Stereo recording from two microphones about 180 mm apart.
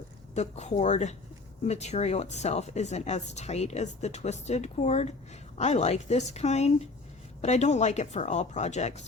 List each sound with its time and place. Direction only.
0.3 s speech: 40° left (ahead or behind)